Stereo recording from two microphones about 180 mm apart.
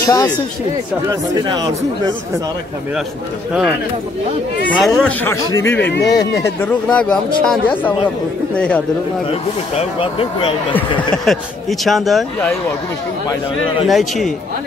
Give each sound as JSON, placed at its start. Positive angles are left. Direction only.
{"t": 0.0, "sound": "speech", "side_deg": 20}
{"t": 1.4, "sound": "speech", "side_deg": -20}
{"t": 4.7, "sound": "speech", "side_deg": 0}
{"t": 5.3, "sound": "speech", "side_deg": 15}
{"t": 9.3, "sound": "speech", "side_deg": 30}
{"t": 11.3, "sound": "speech", "side_deg": 0}
{"t": 13.8, "sound": "speech", "side_deg": 0}